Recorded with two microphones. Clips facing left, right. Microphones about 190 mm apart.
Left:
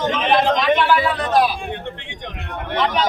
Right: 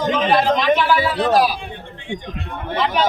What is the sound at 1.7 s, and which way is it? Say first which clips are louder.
Speech: even; 70° left (ahead or behind).